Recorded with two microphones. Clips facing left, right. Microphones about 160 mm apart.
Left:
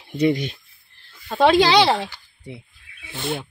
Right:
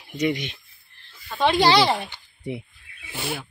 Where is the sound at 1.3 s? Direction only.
90° left.